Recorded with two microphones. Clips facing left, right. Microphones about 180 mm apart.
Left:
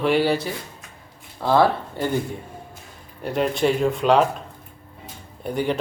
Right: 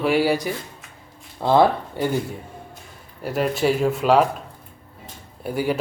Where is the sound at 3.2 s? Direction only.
5° right (ahead or behind).